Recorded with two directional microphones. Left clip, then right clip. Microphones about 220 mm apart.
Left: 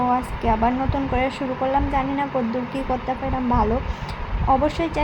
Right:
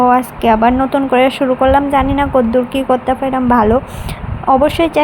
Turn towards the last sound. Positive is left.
turn(degrees=-30)  # may be behind; listen again after turning